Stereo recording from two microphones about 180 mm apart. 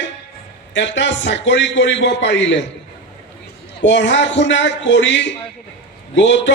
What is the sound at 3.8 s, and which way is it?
A man's voice, 85° left.